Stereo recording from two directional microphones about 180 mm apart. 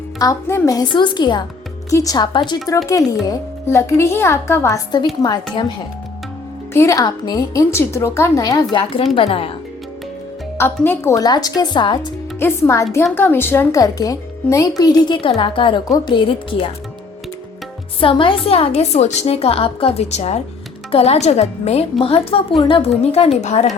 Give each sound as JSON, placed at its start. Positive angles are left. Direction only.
{"t": 0.2, "sound": "speech", "side_deg": 15}
{"t": 6.7, "sound": "speech", "side_deg": 15}
{"t": 8.7, "sound": "a woman's voice", "side_deg": 30}
{"t": 10.6, "sound": "speech", "side_deg": 15}
{"t": 18.0, "sound": "a woman's voice", "side_deg": 30}